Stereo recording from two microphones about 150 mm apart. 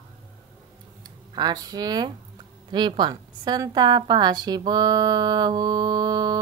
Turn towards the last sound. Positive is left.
turn(degrees=-25)  # may be behind; listen again after turning